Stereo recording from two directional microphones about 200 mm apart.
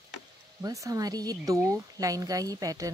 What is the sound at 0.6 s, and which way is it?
Speech, 15° right (ahead or behind).